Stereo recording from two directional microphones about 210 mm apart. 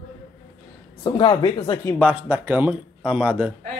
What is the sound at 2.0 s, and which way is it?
Speech, 5° right (ahead or behind).